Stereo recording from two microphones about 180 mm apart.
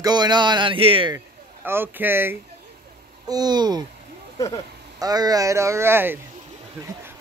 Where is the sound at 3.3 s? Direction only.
20° right (ahead or behind).